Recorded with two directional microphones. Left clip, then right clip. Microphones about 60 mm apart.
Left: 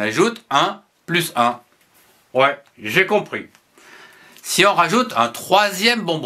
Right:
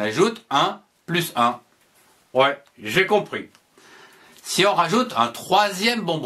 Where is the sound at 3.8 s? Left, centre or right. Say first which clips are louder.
Left 4 dB; left.